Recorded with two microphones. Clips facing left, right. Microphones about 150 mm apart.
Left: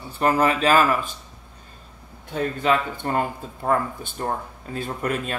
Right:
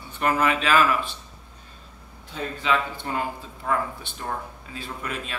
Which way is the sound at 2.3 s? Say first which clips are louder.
Left 4 dB; 50° left (ahead or behind).